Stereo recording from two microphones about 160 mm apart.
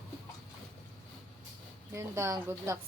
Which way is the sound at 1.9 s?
20° right (ahead or behind).